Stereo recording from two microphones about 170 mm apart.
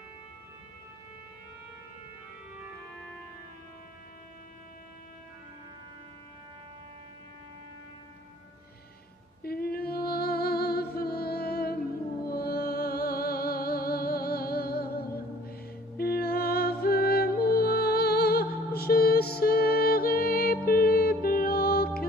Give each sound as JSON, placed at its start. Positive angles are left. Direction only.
{"t": 9.4, "sound": "music", "side_deg": 65}